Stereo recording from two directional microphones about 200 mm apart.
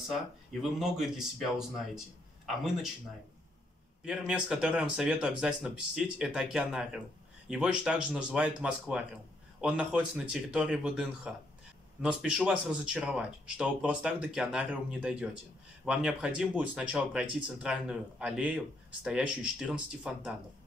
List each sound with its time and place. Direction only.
0.5 s speech: centre (ahead or behind)
2.4 s a man's voice: centre (ahead or behind)
4.0 s speech: 5° right (ahead or behind)